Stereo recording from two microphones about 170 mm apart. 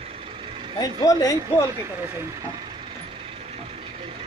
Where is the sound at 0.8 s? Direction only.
20° left (ahead or behind).